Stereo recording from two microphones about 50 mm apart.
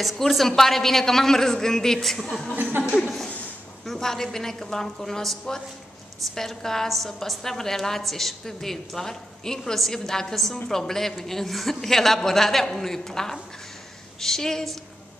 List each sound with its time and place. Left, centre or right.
0.0 s a woman's voice: centre
2.5 s speech: right
3.0 s a woman's voice: centre